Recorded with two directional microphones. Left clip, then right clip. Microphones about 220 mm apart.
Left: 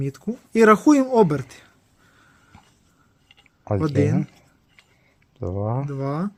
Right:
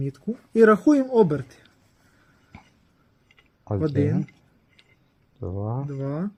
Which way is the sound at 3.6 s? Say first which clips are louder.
Left 3 dB; 40° left (ahead or behind).